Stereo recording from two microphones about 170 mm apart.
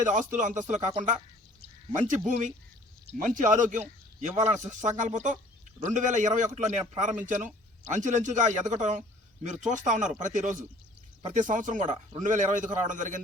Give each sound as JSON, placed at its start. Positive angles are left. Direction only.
{"t": 0.0, "sound": "a man's voice", "side_deg": -50}